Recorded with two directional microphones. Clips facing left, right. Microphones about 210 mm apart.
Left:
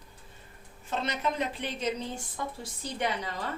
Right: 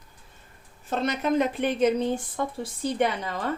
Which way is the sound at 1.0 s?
50° right (ahead or behind).